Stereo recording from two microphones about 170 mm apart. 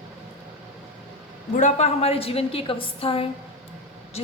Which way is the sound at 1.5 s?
45° left (ahead or behind).